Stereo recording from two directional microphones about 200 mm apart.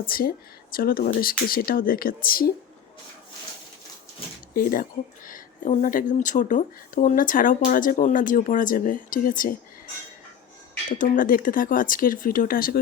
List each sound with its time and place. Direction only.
0.0 s a woman's voice: 45° left (ahead or behind)
4.5 s a woman's voice: 45° left (ahead or behind)
10.9 s a woman's voice: 40° left (ahead or behind)